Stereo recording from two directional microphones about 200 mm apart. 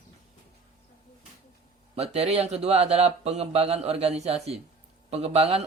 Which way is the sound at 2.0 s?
30° right (ahead or behind).